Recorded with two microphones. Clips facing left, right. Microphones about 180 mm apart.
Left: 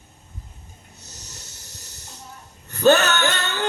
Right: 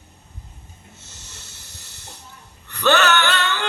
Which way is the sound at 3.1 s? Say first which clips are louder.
Right 2 dB; 20° left (ahead or behind).